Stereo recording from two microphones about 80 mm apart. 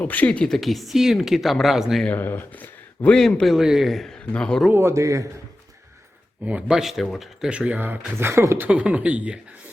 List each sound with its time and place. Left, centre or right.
0.0 s speech: left; by 2.0 s centre
2.0 s speech: left
3.2 s speech: centre
4.3 s speech: centre
4.7 s a man's voice: right
6.4 s speech: centre; by 8.6 s right
8.6 s speech: centre